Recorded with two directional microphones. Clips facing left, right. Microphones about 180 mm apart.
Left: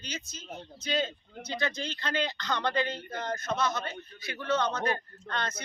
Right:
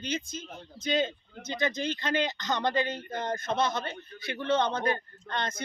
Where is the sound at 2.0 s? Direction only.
20° right (ahead or behind).